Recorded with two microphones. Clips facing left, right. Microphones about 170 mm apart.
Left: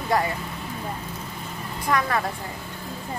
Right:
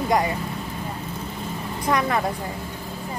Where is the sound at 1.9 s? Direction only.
20° right (ahead or behind).